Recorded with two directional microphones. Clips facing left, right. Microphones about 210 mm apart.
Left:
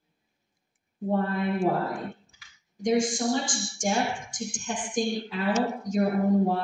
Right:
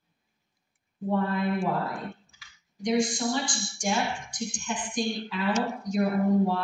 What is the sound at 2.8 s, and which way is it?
A woman's voice, 50° left (ahead or behind).